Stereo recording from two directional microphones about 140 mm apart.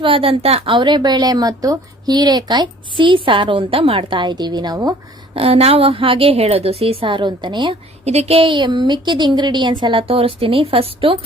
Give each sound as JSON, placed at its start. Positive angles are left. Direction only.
{"t": 0.0, "sound": "a woman's voice", "side_deg": -40}
{"t": 5.3, "sound": "a woman's voice", "side_deg": -45}
{"t": 8.0, "sound": "a woman's voice", "side_deg": -50}